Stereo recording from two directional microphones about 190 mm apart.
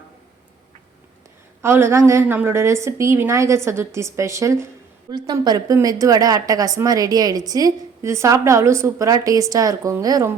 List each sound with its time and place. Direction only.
1.6 s a woman's voice: 15° right (ahead or behind)